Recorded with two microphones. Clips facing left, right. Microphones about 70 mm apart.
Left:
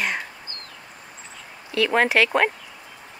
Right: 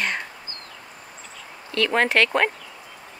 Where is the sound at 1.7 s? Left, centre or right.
Centre.